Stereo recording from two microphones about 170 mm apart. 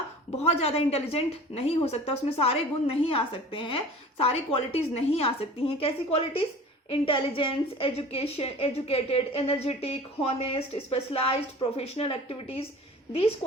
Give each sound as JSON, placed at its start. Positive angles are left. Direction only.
{"t": 0.3, "sound": "a woman's voice", "side_deg": 40}